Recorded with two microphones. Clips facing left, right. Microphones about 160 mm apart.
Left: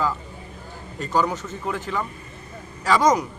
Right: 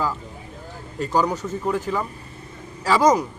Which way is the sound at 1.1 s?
10° right (ahead or behind).